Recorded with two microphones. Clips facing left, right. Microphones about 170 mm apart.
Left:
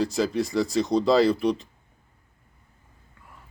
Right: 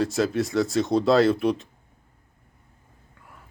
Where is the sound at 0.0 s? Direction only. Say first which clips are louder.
Right 1 dB; centre (ahead or behind).